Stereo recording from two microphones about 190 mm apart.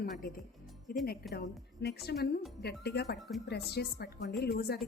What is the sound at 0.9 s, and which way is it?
A woman's voice, 50° left (ahead or behind).